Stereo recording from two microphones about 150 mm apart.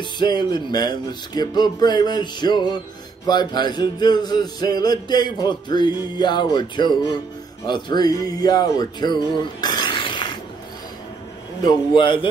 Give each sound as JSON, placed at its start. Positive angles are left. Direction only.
{"t": 0.0, "sound": "music", "side_deg": 30}
{"t": 11.6, "sound": "a man's voice", "side_deg": 30}